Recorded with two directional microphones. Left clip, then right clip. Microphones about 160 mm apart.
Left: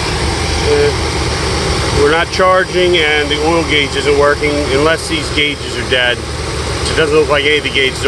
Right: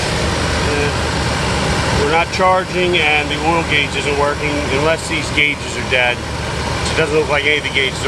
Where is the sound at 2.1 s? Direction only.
15° left (ahead or behind).